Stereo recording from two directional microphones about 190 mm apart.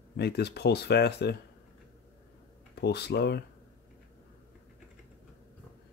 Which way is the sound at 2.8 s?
60° left (ahead or behind).